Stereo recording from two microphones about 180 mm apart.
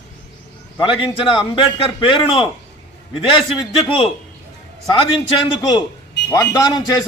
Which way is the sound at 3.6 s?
25° left (ahead or behind).